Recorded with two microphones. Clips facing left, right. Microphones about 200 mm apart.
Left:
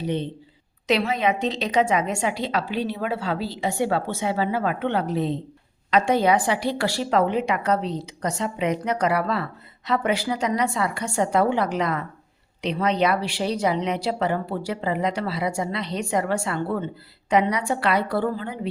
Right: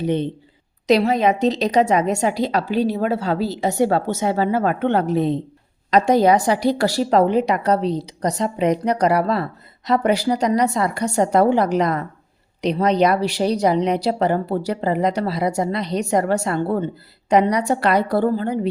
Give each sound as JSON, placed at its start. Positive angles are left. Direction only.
{"t": 0.0, "sound": "speech", "side_deg": -50}
{"t": 0.9, "sound": "a woman's voice", "side_deg": -40}